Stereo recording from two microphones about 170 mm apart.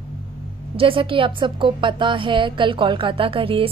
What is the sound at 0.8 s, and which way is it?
A woman's voice, 30° right (ahead or behind).